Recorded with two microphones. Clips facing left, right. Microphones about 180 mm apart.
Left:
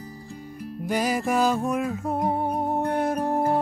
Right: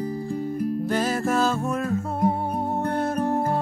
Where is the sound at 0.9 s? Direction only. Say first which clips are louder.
Left 2 dB; 15° left (ahead or behind).